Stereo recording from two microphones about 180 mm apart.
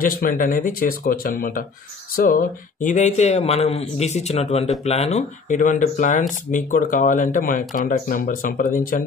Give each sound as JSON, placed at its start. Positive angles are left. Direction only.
{"t": 0.0, "sound": "speech", "side_deg": 50}